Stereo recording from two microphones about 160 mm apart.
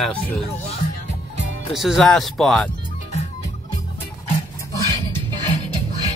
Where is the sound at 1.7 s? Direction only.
Centre (ahead or behind).